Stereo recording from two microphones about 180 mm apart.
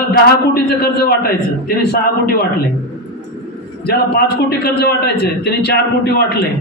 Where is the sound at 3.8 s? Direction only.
65° left (ahead or behind).